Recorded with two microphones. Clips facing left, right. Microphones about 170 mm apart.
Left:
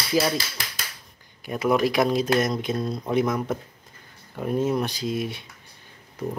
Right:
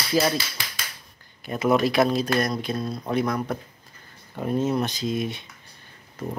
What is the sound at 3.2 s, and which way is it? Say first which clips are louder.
Speech: left 1 dB; 5° left (ahead or behind).